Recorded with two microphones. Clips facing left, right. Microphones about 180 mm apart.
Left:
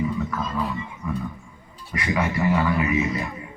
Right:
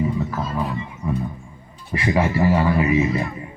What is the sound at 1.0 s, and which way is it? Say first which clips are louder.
Music: right 4 dB; 35° right (ahead or behind).